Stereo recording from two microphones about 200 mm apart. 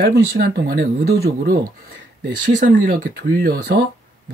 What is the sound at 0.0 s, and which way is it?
Speech, 50° right (ahead or behind).